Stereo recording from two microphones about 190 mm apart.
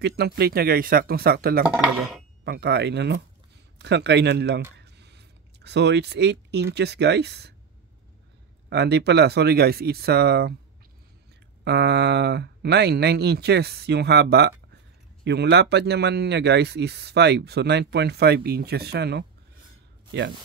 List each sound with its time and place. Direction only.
0.0 s speech: 60° right (ahead or behind)
1.8 s speech: centre (ahead or behind)
2.4 s speech: 60° right (ahead or behind)
8.6 s speech: 60° right (ahead or behind)
11.6 s speech: 60° right (ahead or behind)